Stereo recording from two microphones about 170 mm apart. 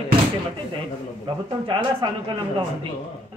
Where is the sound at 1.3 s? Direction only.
30° right (ahead or behind).